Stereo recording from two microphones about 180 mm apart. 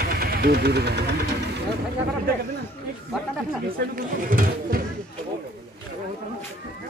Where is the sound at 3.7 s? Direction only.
50° right (ahead or behind).